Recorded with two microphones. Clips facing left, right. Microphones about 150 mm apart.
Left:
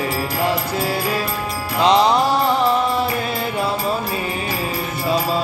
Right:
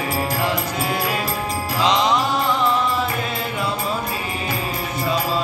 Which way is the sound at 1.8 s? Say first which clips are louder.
Left 4 dB; 35° left (ahead or behind).